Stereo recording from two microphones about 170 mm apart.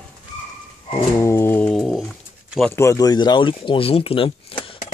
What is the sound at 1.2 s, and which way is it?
Bird, 15° left (ahead or behind).